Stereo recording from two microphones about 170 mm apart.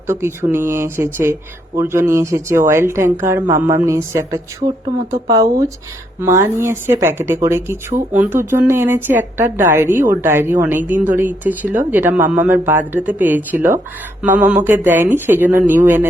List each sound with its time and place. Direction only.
0.1 s speech: 15° right (ahead or behind)